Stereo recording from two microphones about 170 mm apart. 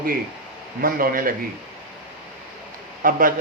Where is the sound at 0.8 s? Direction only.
60° right (ahead or behind).